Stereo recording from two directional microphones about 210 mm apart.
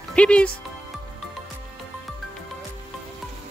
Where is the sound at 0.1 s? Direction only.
5° left (ahead or behind).